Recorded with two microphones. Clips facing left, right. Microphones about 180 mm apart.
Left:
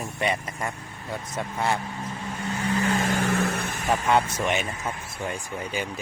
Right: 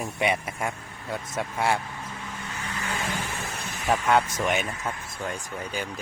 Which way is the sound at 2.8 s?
40° left (ahead or behind).